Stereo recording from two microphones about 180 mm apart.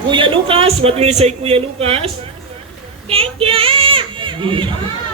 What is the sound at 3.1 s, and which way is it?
A man's voice, 30° right (ahead or behind).